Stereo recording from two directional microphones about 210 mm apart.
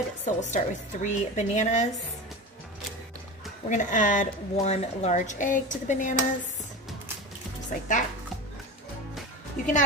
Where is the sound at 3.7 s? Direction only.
35° left (ahead or behind).